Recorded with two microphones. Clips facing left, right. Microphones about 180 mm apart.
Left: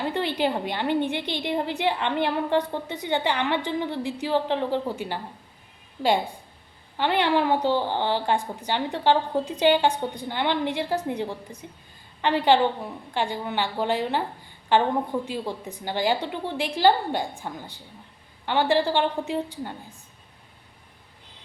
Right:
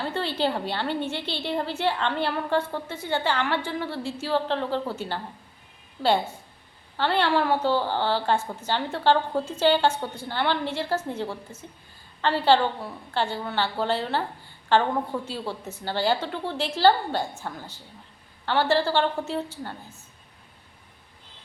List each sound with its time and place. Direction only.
0.0 s a woman's voice: 15° left (ahead or behind)